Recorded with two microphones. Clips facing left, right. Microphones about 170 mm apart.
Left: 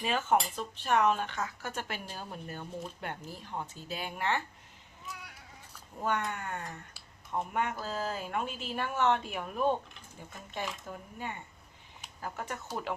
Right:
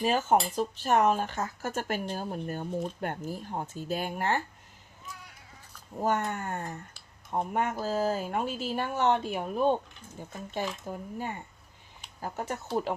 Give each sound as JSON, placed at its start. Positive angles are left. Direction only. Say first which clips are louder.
{"t": 0.0, "sound": "speech", "louder": "right 4 dB", "side_deg": -40}
{"t": 6.0, "sound": "speech", "louder": "right 4 dB", "side_deg": -40}